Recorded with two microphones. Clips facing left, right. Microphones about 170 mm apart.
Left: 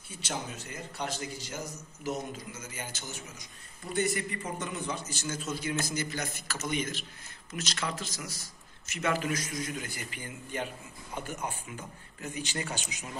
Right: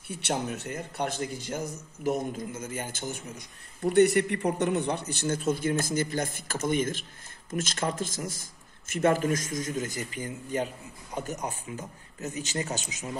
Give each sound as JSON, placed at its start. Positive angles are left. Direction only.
{"t": 0.1, "sound": "a man's voice", "side_deg": -65}